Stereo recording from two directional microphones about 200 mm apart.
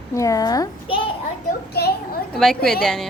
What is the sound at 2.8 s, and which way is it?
Speech, centre (ahead or behind).